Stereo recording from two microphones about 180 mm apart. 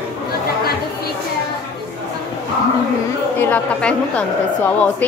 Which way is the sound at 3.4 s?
5° left (ahead or behind).